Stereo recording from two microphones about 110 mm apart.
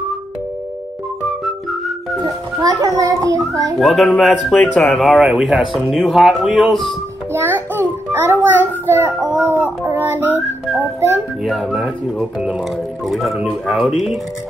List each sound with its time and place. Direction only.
2.2 s a child's voice: 35° right (ahead or behind)
3.8 s speech: centre (ahead or behind)
7.3 s a child's voice: 20° right (ahead or behind)
9.5 s a sound: 20° right (ahead or behind)
10.8 s a child's voice: 25° right (ahead or behind)
11.4 s speech: centre (ahead or behind)